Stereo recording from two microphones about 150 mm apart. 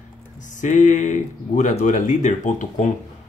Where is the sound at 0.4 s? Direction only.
55° left (ahead or behind).